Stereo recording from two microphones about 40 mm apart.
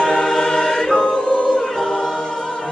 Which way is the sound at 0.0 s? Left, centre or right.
Left.